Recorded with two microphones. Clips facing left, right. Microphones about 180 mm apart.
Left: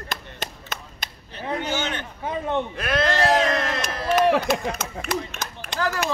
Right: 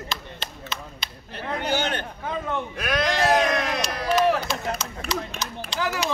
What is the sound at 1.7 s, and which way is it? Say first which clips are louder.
Speech: right 2 dB; 35° right (ahead or behind).